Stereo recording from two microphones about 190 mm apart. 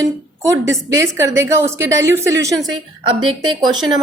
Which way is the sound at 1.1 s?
15° right (ahead or behind).